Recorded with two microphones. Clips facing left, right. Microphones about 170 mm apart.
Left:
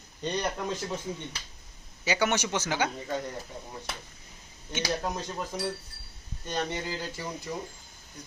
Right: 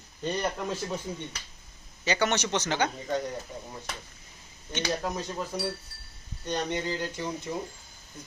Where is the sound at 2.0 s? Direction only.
10° left (ahead or behind).